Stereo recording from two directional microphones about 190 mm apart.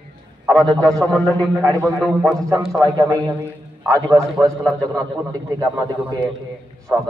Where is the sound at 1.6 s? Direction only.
15° right (ahead or behind).